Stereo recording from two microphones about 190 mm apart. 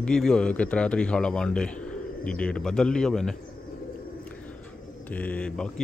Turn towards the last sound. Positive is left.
turn(degrees=5)  # may be behind; listen again after turning